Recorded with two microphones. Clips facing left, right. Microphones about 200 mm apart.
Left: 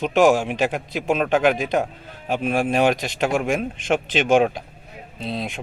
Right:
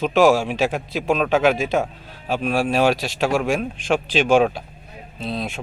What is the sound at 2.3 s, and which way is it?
Speech, 20° left (ahead or behind).